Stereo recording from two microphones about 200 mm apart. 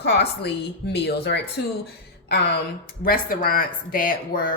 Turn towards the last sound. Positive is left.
turn(degrees=45)  # may be behind; listen again after turning